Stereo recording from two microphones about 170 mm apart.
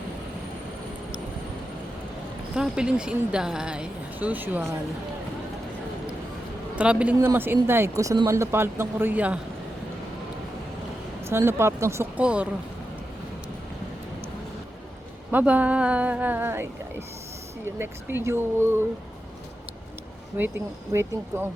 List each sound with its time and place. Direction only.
2.6 s speech: 5° right (ahead or behind)
6.7 s speech: 5° right (ahead or behind)
11.3 s speech: 15° right (ahead or behind)
15.3 s speech: 10° right (ahead or behind)
17.7 s speech: 15° right (ahead or behind)
20.4 s speech: 10° right (ahead or behind)